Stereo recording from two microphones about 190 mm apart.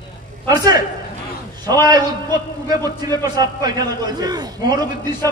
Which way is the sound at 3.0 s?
20° right (ahead or behind).